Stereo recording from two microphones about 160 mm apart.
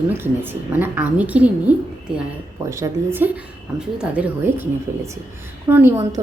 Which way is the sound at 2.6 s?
20° right (ahead or behind).